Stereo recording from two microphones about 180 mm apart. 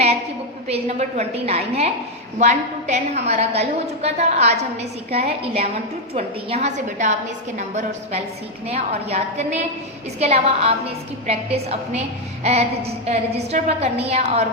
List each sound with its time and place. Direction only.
0.7 s a woman's voice: 35° right (ahead or behind)